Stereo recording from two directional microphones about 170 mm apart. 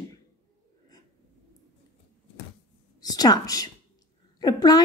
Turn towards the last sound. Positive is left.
turn(degrees=20)  # may be behind; listen again after turning